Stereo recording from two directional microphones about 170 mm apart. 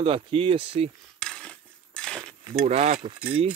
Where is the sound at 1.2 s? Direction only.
5° left (ahead or behind).